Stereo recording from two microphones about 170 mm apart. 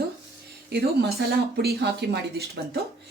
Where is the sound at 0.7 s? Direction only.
65° right (ahead or behind).